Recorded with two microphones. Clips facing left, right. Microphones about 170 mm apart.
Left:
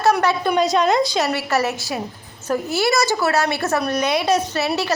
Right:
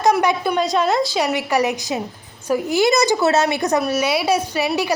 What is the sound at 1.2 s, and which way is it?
A woman's voice, 15° right (ahead or behind).